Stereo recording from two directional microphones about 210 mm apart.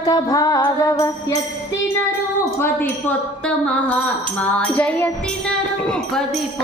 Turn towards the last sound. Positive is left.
turn(degrees=5)  # may be behind; listen again after turning